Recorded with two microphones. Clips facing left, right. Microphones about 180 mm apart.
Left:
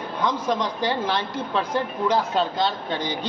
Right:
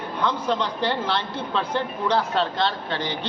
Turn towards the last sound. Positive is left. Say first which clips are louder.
# left 1 dB
turn(degrees=10)  # may be behind; listen again after turning